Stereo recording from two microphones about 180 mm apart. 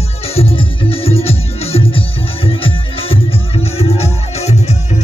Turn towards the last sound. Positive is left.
turn(degrees=35)  # may be behind; listen again after turning